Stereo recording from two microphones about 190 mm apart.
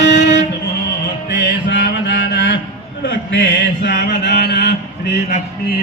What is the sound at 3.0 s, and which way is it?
Mantra, 85° left.